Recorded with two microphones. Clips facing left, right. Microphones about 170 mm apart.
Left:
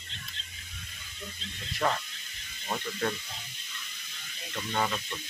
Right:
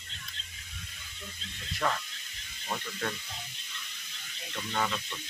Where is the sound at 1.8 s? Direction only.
10° left (ahead or behind).